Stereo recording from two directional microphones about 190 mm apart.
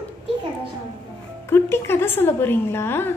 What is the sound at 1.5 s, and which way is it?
A woman's voice, 10° left (ahead or behind).